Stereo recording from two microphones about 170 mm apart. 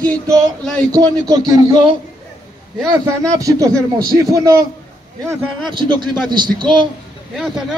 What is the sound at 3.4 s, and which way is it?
A man's voice, 20° right (ahead or behind).